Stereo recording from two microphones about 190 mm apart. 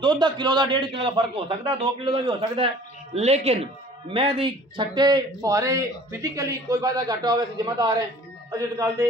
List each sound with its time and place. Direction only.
0.0 s a man's voice: 25° right (ahead or behind)